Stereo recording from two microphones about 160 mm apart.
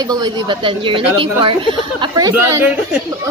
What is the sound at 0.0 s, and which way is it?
A woman's voice, 25° right (ahead or behind).